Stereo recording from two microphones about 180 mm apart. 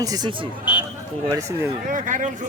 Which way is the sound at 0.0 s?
20° right (ahead or behind).